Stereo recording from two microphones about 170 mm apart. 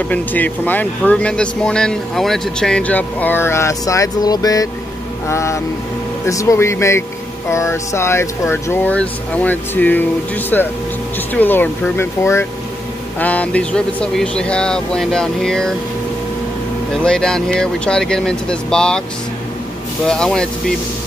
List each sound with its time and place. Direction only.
0.1 s speech: 10° left (ahead or behind)
16.9 s speech: 5° left (ahead or behind)
20.1 s speech: 5° left (ahead or behind)